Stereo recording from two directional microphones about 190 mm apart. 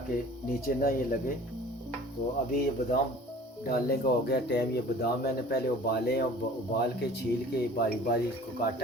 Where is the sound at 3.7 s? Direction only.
55° left (ahead or behind).